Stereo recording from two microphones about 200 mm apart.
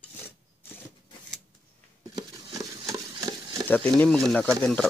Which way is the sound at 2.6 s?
20° right (ahead or behind).